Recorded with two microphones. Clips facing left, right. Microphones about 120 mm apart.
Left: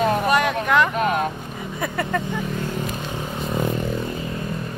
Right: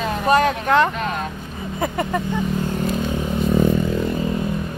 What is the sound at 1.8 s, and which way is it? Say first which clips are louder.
Speech: right 2 dB; 20° right (ahead or behind).